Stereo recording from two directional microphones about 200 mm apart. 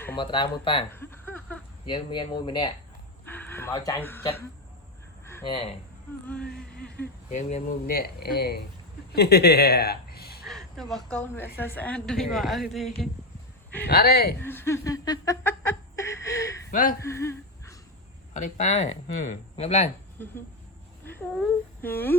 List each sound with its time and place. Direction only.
0.2 s speech: 25° left (ahead or behind)
0.9 s a sound: 10° left (ahead or behind)
1.9 s speech: 25° left (ahead or behind)
3.2 s a sound: 10° left (ahead or behind)
5.5 s speech: 30° left (ahead or behind)
6.2 s a woman's voice: 5° left (ahead or behind)
7.3 s speech: 40° left (ahead or behind)
10.4 s a woman's voice: centre (ahead or behind)
13.8 s speech: 50° left (ahead or behind)
14.4 s a sound: 10° left (ahead or behind)
18.3 s speech: 35° left (ahead or behind)
20.2 s speech: 10° left (ahead or behind)
21.3 s humming: 5° left (ahead or behind)